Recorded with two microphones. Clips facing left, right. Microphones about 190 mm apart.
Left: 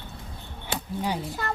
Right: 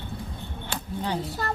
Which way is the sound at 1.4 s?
35° right (ahead or behind).